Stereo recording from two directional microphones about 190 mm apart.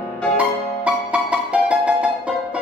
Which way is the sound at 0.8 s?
5° right (ahead or behind).